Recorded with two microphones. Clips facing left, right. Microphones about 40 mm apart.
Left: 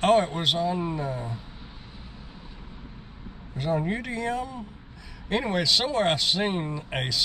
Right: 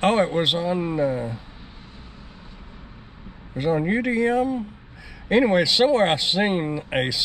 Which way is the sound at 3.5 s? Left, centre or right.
Centre.